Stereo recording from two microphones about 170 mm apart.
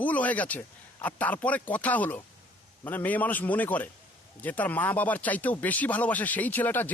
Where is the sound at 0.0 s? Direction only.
10° left (ahead or behind).